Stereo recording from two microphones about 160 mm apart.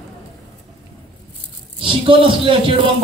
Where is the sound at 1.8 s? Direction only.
35° right (ahead or behind).